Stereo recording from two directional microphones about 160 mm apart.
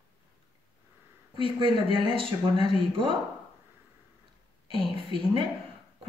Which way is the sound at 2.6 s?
35° right (ahead or behind).